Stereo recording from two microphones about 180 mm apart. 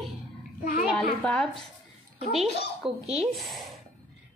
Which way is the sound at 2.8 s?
30° right (ahead or behind).